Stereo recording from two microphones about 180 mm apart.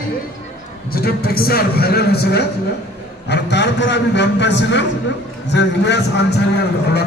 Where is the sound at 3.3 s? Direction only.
75° left (ahead or behind).